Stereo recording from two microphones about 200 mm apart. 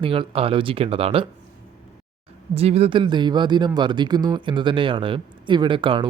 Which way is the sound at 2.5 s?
30° right (ahead or behind).